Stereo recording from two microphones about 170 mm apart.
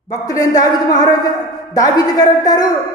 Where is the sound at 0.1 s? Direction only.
20° left (ahead or behind).